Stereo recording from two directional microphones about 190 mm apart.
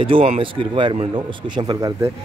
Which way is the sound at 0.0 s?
30° right (ahead or behind).